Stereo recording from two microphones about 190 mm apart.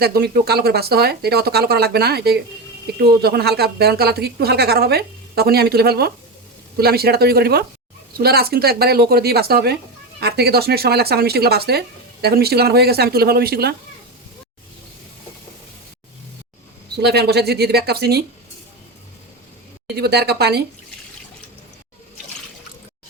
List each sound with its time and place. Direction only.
0.0 s speech: 55° right (ahead or behind)
16.9 s speech: 60° right (ahead or behind)
20.0 s speech: 60° right (ahead or behind)